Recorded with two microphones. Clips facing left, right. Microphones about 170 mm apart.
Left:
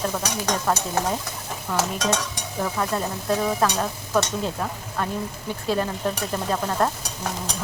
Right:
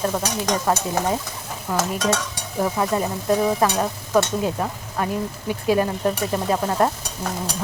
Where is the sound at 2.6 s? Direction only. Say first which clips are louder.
Right 4 dB; 15° right (ahead or behind).